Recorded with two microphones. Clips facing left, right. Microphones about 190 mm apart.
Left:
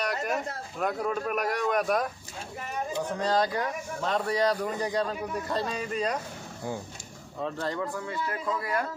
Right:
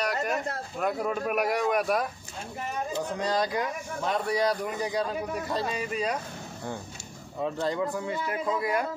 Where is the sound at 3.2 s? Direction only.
15° right (ahead or behind).